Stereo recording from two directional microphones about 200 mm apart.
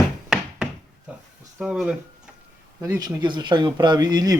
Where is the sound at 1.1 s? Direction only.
5° right (ahead or behind).